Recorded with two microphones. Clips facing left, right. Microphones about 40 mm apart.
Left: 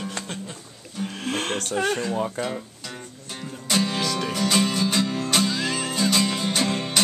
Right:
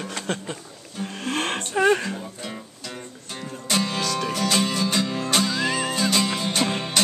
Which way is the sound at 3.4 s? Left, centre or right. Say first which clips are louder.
Left 1 dB; centre.